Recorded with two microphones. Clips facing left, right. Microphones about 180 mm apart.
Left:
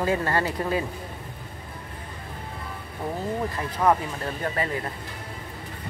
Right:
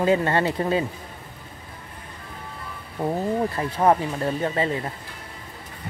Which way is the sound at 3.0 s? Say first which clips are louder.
Right 6 dB; 15° right (ahead or behind).